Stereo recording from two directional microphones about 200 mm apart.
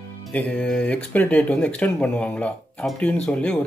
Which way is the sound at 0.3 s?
5° left (ahead or behind).